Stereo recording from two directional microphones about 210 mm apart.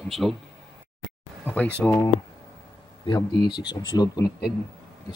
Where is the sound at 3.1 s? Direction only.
20° left (ahead or behind).